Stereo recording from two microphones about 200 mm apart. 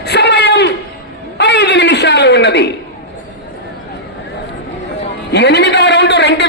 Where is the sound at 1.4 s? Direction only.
55° left (ahead or behind).